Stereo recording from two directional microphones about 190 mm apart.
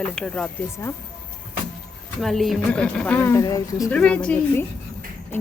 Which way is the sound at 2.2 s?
Centre (ahead or behind).